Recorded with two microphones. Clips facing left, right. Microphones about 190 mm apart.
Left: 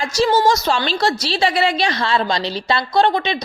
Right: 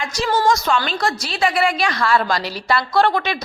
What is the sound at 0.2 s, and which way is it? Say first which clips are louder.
A woman's voice: left 3 dB; 25° left (ahead or behind).